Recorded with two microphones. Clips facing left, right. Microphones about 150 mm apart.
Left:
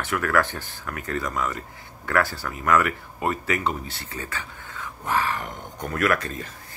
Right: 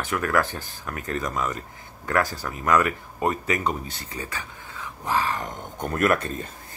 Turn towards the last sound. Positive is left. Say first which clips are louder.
# right 2 dB
turn(degrees=-25)  # may be behind; listen again after turning